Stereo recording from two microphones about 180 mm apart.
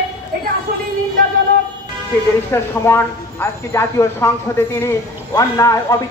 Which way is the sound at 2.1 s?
10° left (ahead or behind).